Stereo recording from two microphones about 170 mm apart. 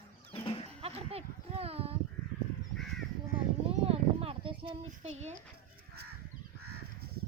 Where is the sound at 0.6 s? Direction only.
35° right (ahead or behind).